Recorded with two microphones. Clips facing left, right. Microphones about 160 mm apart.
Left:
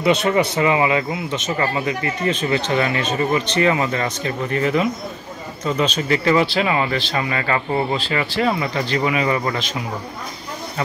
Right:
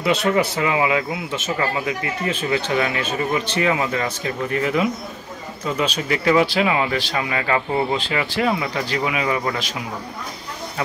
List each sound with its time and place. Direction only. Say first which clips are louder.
0.0 s speech: left 2 dB; centre (ahead or behind)